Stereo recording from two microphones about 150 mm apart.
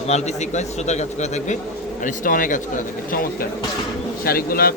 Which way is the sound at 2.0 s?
65° left (ahead or behind).